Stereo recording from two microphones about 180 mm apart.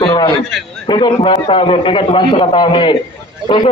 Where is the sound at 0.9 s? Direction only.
25° left (ahead or behind).